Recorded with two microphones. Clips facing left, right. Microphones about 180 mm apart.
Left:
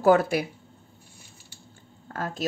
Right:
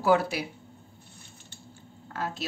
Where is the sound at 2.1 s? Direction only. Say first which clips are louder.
Left 1 dB; 50° left (ahead or behind).